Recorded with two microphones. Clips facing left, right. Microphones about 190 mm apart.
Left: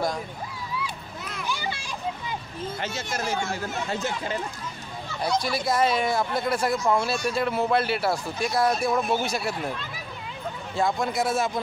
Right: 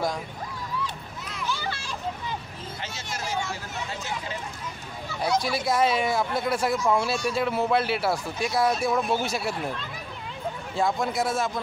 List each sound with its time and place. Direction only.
1.4 s children playing: 15° left (ahead or behind)
2.8 s speech: 50° left (ahead or behind)
5.2 s speech: 5° right (ahead or behind)